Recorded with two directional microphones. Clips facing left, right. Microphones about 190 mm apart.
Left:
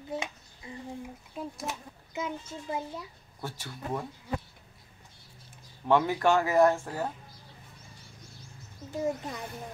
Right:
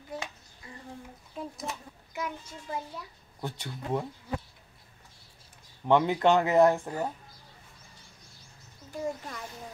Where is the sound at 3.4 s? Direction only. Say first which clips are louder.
Right 2 dB; 20° right (ahead or behind).